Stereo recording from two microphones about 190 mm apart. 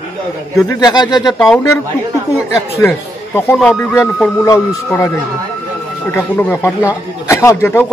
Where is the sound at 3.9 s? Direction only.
10° left (ahead or behind).